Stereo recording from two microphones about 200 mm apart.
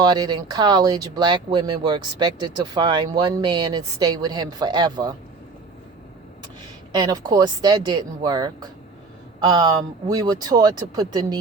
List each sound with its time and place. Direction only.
0.0 s speech: 20° right (ahead or behind)
6.9 s speech: 20° right (ahead or behind)